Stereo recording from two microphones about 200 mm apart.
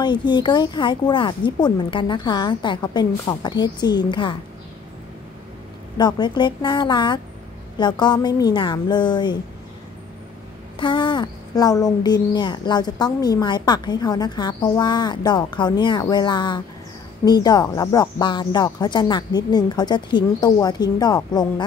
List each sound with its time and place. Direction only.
0.0 s a woman's voice: 20° left (ahead or behind)
5.9 s a woman's voice: 20° left (ahead or behind)
10.8 s a woman's voice: 25° left (ahead or behind)